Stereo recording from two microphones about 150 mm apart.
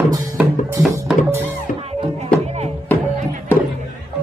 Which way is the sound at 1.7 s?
60° left (ahead or behind).